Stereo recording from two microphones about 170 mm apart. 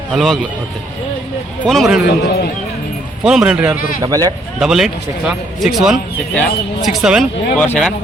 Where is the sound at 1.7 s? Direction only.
Centre (ahead or behind).